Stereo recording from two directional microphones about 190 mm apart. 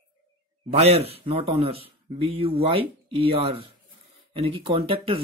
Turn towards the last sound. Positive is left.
turn(degrees=-30)  # may be behind; listen again after turning